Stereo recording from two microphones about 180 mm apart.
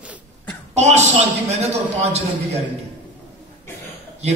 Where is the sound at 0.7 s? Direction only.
40° right (ahead or behind).